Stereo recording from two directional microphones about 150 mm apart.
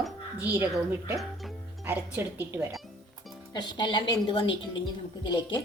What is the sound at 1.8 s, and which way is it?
Speech, 15° right (ahead or behind).